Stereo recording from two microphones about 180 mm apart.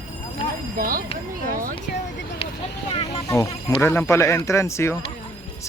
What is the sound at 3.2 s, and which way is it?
Speech, 20° left (ahead or behind).